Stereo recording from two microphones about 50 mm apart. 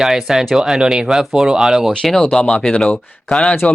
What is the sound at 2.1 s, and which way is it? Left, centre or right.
Speech, centre.